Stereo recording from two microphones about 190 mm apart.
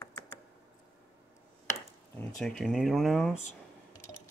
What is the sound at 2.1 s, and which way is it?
Speech, 5° left (ahead or behind).